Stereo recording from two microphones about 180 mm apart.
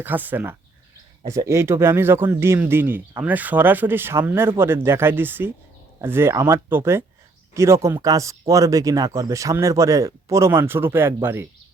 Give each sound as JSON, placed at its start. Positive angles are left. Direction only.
{"t": 0.0, "sound": "speech", "side_deg": -10}